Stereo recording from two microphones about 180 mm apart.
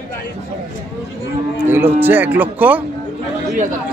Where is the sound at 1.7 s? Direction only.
10° right (ahead or behind).